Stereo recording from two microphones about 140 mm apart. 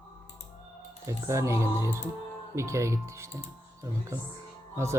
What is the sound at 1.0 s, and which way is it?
Speech, 20° right (ahead or behind).